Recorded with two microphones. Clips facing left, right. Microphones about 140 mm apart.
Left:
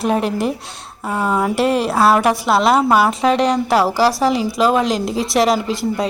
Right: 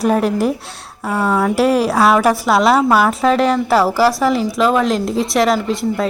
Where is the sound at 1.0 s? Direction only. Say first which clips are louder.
Right 2 dB; 20° left (ahead or behind).